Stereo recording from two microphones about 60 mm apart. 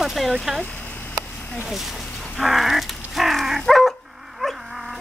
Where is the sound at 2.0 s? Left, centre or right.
Centre.